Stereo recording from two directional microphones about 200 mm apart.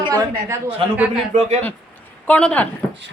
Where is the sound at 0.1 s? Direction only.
15° right (ahead or behind).